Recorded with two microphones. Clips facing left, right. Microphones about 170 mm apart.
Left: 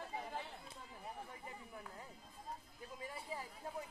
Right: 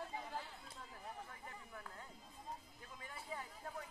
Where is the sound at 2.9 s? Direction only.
25° left (ahead or behind).